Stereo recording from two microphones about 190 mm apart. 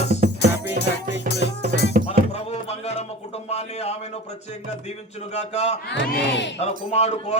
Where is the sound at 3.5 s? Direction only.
35° left (ahead or behind).